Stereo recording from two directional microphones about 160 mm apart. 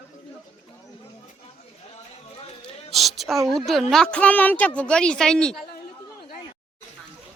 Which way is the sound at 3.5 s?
Centre (ahead or behind).